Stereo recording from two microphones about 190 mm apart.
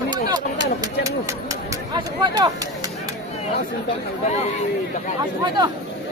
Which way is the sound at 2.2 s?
20° right (ahead or behind).